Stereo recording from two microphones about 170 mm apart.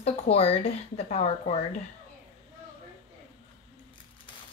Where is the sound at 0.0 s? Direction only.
35° left (ahead or behind).